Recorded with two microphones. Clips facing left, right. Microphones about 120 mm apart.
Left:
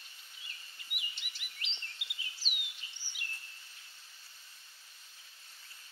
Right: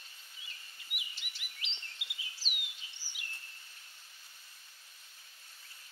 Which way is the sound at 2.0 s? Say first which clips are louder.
Even; centre (ahead or behind).